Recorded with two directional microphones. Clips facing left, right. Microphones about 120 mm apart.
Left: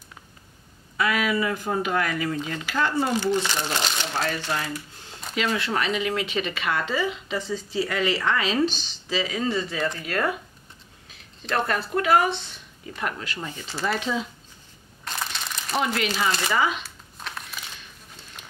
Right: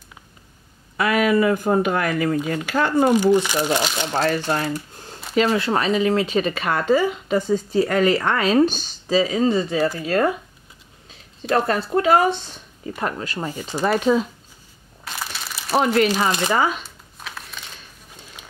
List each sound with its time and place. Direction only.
0.9 s speech: 45° right (ahead or behind)
3.2 s speech: 15° right (ahead or behind)
4.1 s speech: 40° right (ahead or behind)
11.4 s speech: 30° right (ahead or behind)
15.0 s crumpling: 5° right (ahead or behind)
15.7 s speech: 40° right (ahead or behind)
16.3 s speech: 20° right (ahead or behind)
16.5 s speech: 40° right (ahead or behind)